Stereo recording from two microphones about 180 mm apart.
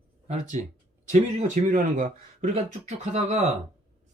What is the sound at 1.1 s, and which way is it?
A man's voice, 45° right (ahead or behind).